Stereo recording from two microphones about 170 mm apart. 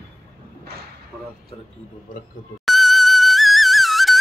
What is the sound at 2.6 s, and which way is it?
Music, centre (ahead or behind).